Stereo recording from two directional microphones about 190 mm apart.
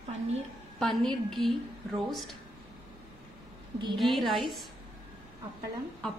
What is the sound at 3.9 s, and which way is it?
Speech, centre (ahead or behind).